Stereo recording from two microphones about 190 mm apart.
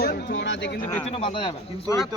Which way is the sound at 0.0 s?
60° left (ahead or behind).